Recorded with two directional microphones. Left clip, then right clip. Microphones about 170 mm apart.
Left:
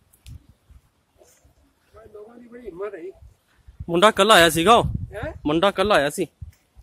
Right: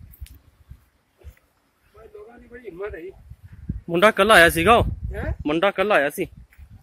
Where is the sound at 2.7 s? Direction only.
5° right (ahead or behind).